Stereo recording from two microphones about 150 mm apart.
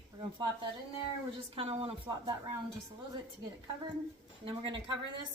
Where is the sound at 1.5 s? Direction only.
40° right (ahead or behind).